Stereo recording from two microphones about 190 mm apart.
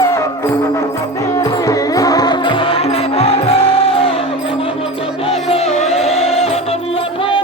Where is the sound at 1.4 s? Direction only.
20° left (ahead or behind).